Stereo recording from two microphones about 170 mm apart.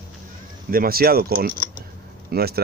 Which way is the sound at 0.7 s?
60° right (ahead or behind).